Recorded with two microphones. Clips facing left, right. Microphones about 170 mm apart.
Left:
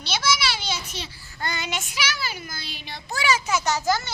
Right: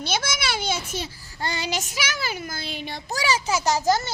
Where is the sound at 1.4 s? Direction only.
30° right (ahead or behind).